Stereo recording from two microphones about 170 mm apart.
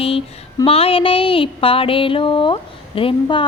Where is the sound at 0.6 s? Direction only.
35° left (ahead or behind).